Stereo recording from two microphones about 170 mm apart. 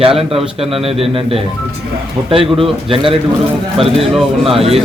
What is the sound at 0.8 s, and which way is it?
Speech, 35° right (ahead or behind).